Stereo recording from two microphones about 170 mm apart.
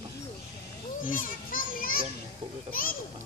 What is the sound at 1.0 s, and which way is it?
Children playing, 55° left (ahead or behind).